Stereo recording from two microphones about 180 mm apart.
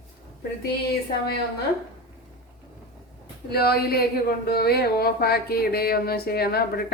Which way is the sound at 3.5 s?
60° left (ahead or behind).